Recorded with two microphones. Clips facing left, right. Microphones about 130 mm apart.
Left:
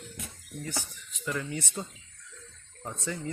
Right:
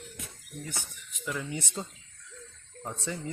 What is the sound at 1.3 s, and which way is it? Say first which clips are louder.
Speech: left 1 dB; 10° right (ahead or behind).